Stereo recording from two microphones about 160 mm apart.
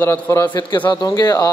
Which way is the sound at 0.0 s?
15° left (ahead or behind).